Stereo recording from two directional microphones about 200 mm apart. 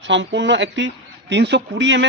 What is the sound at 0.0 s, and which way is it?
A man's voice, 65° right (ahead or behind).